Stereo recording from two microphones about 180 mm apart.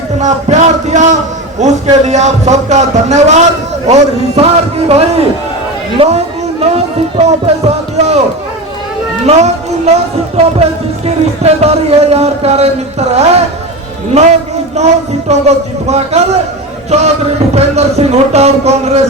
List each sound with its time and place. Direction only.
0.2 s speech: 40° right (ahead or behind)
9.2 s speech: 35° right (ahead or behind)